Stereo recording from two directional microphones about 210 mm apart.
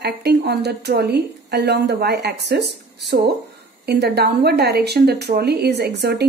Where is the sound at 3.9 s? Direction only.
50° right (ahead or behind).